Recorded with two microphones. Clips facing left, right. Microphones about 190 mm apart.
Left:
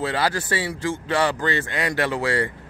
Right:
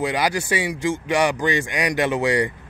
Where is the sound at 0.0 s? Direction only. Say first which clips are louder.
Right 2 dB; 15° right (ahead or behind).